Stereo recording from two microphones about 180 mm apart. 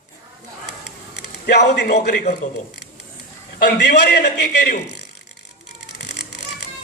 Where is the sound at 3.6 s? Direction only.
65° left (ahead or behind).